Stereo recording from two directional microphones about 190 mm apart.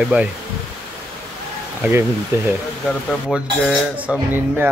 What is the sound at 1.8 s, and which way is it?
Speech, 15° right (ahead or behind).